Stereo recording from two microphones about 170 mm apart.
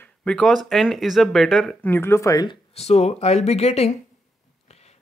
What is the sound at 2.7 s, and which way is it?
Speech, 40° left (ahead or behind).